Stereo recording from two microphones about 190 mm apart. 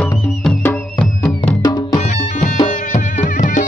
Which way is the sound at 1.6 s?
20° left (ahead or behind).